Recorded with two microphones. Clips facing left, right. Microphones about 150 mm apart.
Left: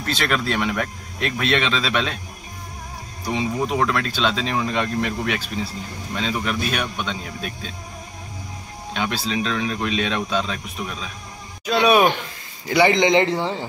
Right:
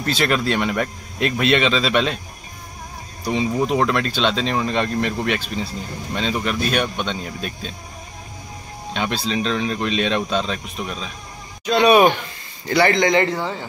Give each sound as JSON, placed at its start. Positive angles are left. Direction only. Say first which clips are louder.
{"t": 0.0, "sound": "speech", "louder": "right 3 dB", "side_deg": 0}
{"t": 3.3, "sound": "speech", "louder": "right 3 dB", "side_deg": 0}
{"t": 8.9, "sound": "speech", "louder": "right 1 dB", "side_deg": 5}
{"t": 11.6, "sound": "speech", "louder": "right 3 dB", "side_deg": 0}
{"t": 12.6, "sound": "a man's voice", "louder": "even", "side_deg": 15}